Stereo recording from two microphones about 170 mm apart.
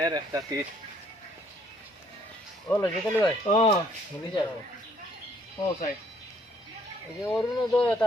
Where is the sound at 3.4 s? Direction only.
35° left (ahead or behind).